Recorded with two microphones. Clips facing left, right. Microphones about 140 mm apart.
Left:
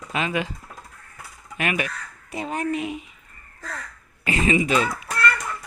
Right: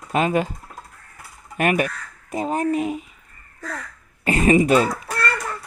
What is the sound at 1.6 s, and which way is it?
Speech, 45° right (ahead or behind).